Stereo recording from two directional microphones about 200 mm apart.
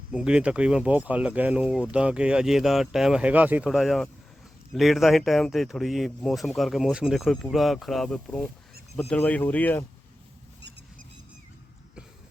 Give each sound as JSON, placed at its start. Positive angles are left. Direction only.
{"t": 0.1, "sound": "speech", "side_deg": -5}